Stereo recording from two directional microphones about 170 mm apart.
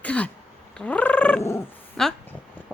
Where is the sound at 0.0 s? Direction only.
10° left (ahead or behind).